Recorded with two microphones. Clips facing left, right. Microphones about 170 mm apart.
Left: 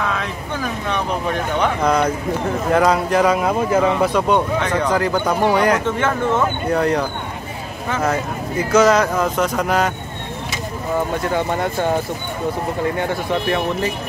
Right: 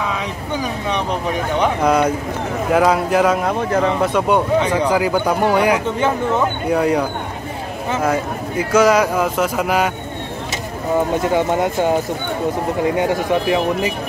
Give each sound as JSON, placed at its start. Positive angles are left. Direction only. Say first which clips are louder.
{"t": 0.0, "sound": "speech", "louder": "even", "side_deg": -10}
{"t": 11.2, "sound": "speech", "louder": "right 3 dB", "side_deg": -20}
{"t": 12.9, "sound": "speech", "louder": "right 4 dB", "side_deg": -15}